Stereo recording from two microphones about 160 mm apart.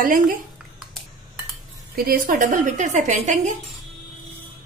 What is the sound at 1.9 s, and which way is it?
A woman's voice, 65° right (ahead or behind).